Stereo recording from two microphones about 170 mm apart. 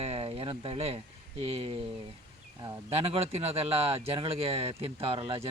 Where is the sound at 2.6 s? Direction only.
20° right (ahead or behind).